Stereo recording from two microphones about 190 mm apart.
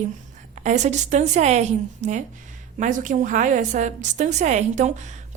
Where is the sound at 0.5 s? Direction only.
40° right (ahead or behind).